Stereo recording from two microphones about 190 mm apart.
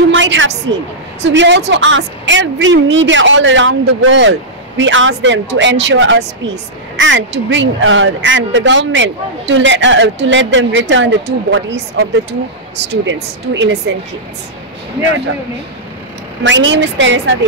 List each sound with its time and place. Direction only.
0.1 s a woman's voice: 85° right; by 1.6 s 70° right (ahead or behind)
1.7 s a man's voice: 80° right
16.4 s a man's voice: 75° right (ahead or behind)